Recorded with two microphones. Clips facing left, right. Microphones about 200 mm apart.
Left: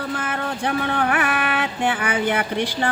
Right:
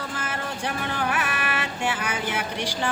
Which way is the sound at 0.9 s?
60° left (ahead or behind).